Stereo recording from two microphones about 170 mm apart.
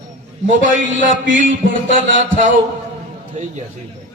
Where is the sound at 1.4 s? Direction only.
50° right (ahead or behind).